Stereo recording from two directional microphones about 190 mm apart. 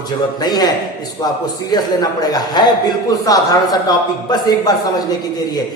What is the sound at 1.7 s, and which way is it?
Speech, 20° left (ahead or behind).